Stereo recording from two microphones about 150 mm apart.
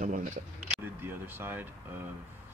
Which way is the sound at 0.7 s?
15° right (ahead or behind).